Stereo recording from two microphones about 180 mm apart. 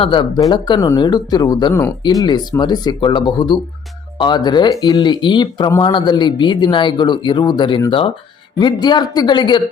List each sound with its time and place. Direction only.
0.0 s speech: 30° left (ahead or behind)